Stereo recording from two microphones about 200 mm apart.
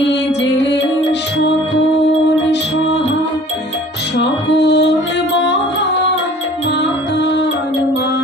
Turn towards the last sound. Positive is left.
turn(degrees=60)  # may be behind; listen again after turning